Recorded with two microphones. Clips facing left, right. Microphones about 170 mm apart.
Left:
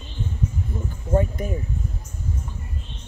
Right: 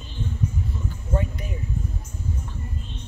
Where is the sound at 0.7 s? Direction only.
45° left (ahead or behind).